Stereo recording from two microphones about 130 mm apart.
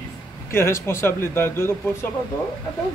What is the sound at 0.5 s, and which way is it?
Speech, 20° left (ahead or behind).